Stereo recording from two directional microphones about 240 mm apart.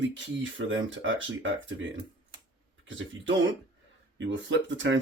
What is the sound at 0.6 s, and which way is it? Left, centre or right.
Speech, right.